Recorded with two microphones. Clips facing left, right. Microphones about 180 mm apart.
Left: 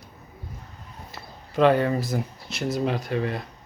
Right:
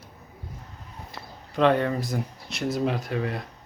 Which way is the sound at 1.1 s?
5° left (ahead or behind).